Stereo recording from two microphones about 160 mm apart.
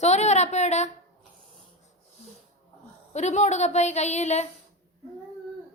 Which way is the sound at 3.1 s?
45° left (ahead or behind).